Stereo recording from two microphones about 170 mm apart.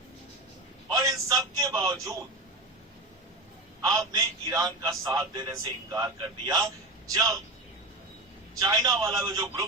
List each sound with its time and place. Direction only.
0.9 s a man's voice: 20° right (ahead or behind)
3.8 s a man's voice: 20° right (ahead or behind)
8.6 s a man's voice: 20° right (ahead or behind)